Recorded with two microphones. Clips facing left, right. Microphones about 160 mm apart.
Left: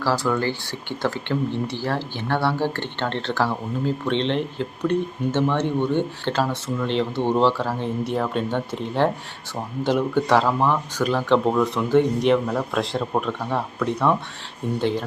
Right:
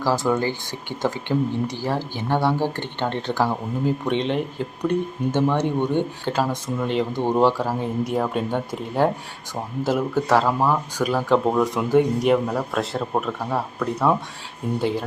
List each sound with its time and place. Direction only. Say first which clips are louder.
0.0 s speech: right 1 dB; 15° right (ahead or behind)